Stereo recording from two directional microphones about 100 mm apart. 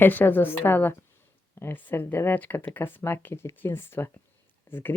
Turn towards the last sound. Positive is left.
turn(degrees=20)  # may be behind; listen again after turning